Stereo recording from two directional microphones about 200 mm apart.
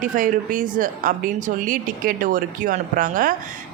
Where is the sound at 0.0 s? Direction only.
40° right (ahead or behind).